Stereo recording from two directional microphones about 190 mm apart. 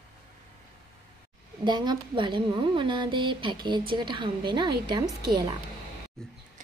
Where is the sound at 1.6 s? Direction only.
25° right (ahead or behind).